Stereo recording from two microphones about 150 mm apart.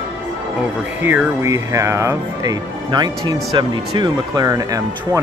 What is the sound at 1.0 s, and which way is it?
Speech, 15° right (ahead or behind).